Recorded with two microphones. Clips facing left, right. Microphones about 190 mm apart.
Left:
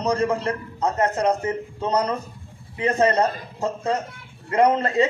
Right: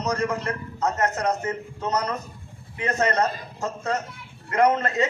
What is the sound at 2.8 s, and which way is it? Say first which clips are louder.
A man's voice: left 4 dB; 30° left (ahead or behind).